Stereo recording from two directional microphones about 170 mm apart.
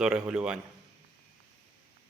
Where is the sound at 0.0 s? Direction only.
5° right (ahead or behind).